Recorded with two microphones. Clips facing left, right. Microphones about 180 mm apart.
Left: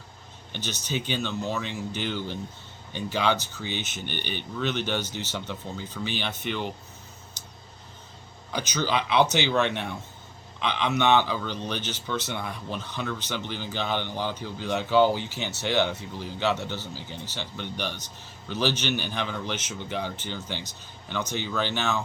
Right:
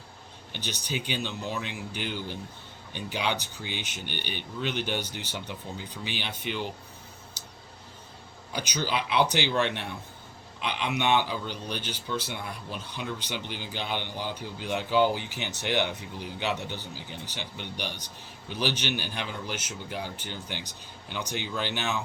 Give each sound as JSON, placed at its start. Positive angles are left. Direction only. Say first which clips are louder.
{"t": 0.5, "sound": "speech", "louder": "left 3 dB", "side_deg": -15}
{"t": 6.1, "sound": "a man's voice", "louder": "left 4 dB", "side_deg": 45}
{"t": 6.3, "sound": "speech", "louder": "left 2 dB", "side_deg": -10}
{"t": 8.5, "sound": "speech", "louder": "left 3 dB", "side_deg": -10}
{"t": 9.5, "sound": "a man's voice", "louder": "left 3 dB", "side_deg": 55}
{"t": 10.6, "sound": "speech", "louder": "left 4 dB", "side_deg": -10}